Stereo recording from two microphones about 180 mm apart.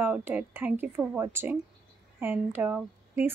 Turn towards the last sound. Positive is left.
turn(degrees=-10)  # may be behind; listen again after turning